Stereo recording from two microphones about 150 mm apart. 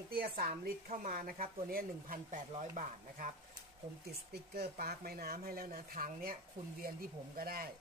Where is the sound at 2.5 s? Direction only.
55° right (ahead or behind).